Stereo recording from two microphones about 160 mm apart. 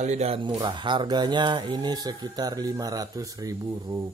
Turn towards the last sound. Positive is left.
turn(degrees=-20)  # may be behind; listen again after turning